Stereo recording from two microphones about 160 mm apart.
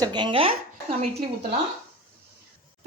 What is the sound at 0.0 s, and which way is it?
Speech, 30° right (ahead or behind).